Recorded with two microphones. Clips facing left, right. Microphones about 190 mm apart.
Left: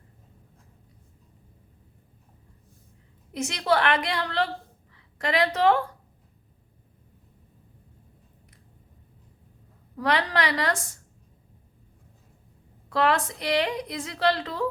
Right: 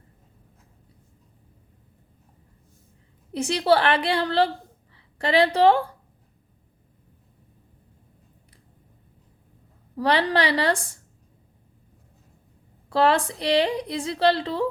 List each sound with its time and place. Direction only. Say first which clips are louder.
3.3 s a woman's voice: right 4 dB; 30° right (ahead or behind)
10.0 s a woman's voice: right 4 dB; 30° right (ahead or behind)
12.9 s a woman's voice: right 3 dB; 30° right (ahead or behind)